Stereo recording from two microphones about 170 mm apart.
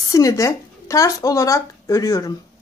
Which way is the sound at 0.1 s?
20° left (ahead or behind).